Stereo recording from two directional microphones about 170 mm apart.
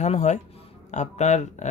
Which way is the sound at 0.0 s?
40° left (ahead or behind).